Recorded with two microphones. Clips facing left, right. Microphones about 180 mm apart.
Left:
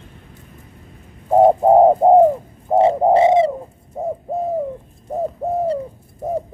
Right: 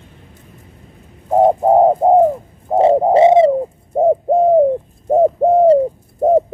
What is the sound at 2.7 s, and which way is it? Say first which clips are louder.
Frog: even; centre (ahead or behind).